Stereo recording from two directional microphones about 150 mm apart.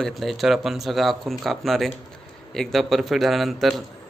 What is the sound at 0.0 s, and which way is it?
Speech, centre (ahead or behind).